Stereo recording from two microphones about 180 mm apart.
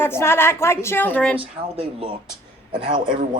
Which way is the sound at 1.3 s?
30° right (ahead or behind).